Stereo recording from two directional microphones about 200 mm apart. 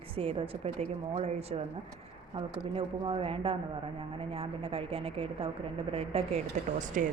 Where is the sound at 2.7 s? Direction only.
25° right (ahead or behind).